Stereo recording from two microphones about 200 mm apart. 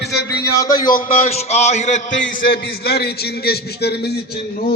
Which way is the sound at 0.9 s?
40° left (ahead or behind).